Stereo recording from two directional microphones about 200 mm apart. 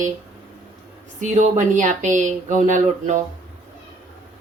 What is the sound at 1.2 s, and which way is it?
Speech, 40° right (ahead or behind).